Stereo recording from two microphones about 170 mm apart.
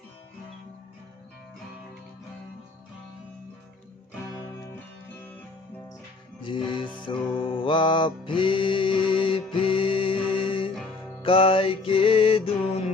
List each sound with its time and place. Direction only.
6.4 s music: 30° left (ahead or behind)